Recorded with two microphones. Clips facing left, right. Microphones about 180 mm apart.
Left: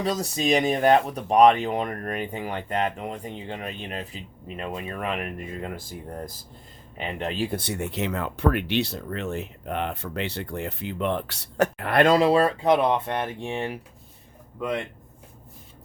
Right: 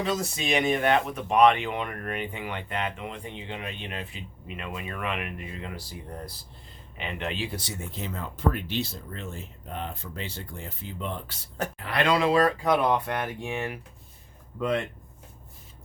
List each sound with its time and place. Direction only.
0.0 s speech: 35° left (ahead or behind)